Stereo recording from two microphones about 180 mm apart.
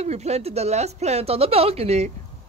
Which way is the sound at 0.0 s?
35° right (ahead or behind).